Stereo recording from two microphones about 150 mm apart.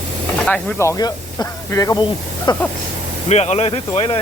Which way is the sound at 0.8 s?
20° left (ahead or behind).